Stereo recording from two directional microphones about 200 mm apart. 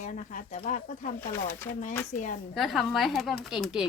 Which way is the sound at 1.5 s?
10° left (ahead or behind).